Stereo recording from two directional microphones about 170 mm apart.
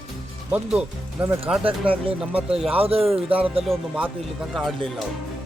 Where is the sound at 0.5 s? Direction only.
5° right (ahead or behind).